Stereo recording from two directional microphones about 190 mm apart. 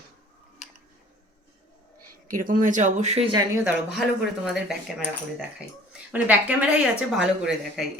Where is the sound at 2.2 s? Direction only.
45° right (ahead or behind).